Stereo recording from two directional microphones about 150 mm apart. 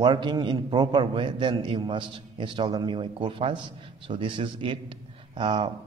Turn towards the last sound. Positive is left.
turn(degrees=-35)  # may be behind; listen again after turning